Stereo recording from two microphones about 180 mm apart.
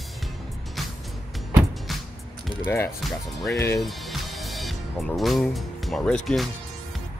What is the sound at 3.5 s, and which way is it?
Speech, 15° left (ahead or behind).